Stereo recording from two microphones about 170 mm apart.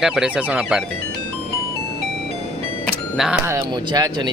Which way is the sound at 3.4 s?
20° right (ahead or behind).